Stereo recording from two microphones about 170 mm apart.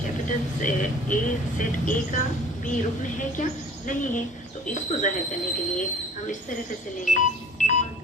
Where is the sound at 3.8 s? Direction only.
50° left (ahead or behind).